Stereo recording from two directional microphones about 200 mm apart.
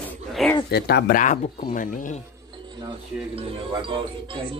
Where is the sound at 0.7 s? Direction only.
55° left (ahead or behind).